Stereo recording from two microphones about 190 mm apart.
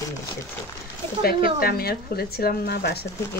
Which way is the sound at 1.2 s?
50° left (ahead or behind).